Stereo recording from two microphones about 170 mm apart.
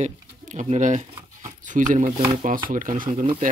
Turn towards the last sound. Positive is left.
turn(degrees=-30)  # may be behind; listen again after turning